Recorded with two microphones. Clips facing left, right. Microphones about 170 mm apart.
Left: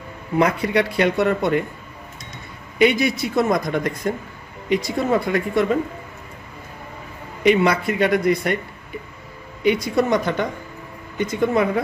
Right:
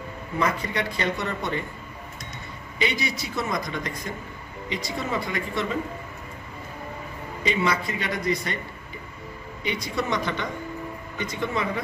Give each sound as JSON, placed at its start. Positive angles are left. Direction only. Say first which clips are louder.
{"t": 0.4, "sound": "speech", "louder": "left 8 dB", "side_deg": 70}
{"t": 2.8, "sound": "speech", "louder": "left 10 dB", "side_deg": 55}
{"t": 7.4, "sound": "speech", "louder": "left 9 dB", "side_deg": 65}
{"t": 9.7, "sound": "speech", "louder": "left 10 dB", "side_deg": 50}